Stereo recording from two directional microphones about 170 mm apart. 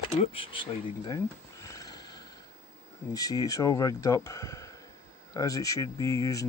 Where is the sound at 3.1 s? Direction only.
20° left (ahead or behind).